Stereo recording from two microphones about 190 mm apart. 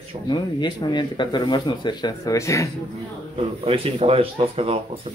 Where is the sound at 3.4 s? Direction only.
30° right (ahead or behind).